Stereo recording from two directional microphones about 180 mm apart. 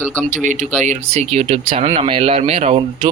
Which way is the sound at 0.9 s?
35° right (ahead or behind).